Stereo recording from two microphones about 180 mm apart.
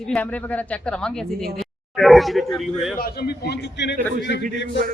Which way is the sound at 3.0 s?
55° left (ahead or behind).